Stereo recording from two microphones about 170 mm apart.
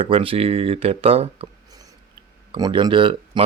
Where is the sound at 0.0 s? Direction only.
35° right (ahead or behind).